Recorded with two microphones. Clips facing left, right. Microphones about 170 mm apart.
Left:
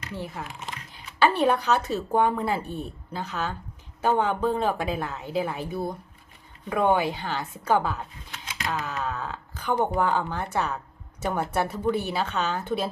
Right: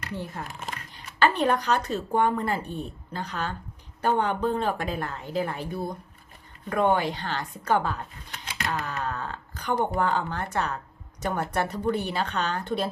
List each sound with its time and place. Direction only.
1.2 s speech: 10° left (ahead or behind)